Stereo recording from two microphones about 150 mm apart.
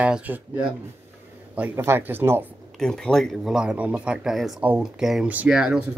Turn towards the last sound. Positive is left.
turn(degrees=-5)  # may be behind; listen again after turning